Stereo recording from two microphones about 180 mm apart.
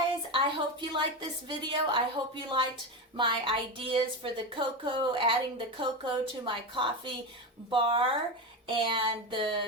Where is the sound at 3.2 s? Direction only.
25° right (ahead or behind).